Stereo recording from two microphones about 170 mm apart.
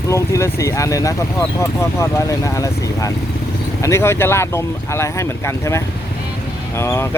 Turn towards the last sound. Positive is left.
turn(degrees=15)  # may be behind; listen again after turning